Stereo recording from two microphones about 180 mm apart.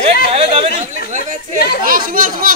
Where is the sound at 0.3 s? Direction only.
35° right (ahead or behind).